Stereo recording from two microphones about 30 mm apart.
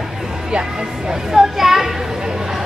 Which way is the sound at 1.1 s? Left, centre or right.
Centre.